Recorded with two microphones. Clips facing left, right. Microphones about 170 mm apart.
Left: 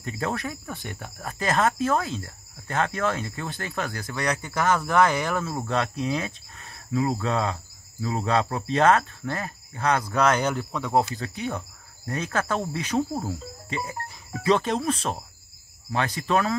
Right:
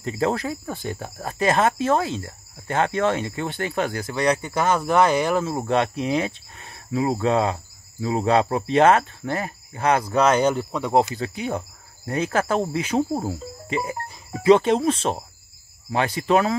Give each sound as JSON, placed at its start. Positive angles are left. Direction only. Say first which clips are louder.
{"t": 0.0, "sound": "speech", "louder": "right 6 dB", "side_deg": -30}
{"t": 7.2, "sound": "cricket", "louder": "right 6 dB", "side_deg": -30}
{"t": 8.7, "sound": "speech", "louder": "right 3 dB", "side_deg": -30}